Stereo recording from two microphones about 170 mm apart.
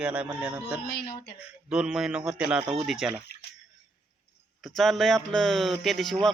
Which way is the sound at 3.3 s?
70° left (ahead or behind).